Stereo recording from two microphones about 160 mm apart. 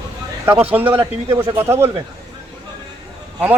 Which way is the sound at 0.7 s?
15° right (ahead or behind).